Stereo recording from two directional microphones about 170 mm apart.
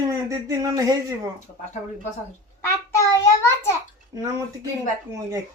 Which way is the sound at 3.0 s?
15° left (ahead or behind).